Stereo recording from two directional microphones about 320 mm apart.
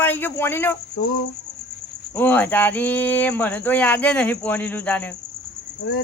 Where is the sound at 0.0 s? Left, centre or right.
Centre.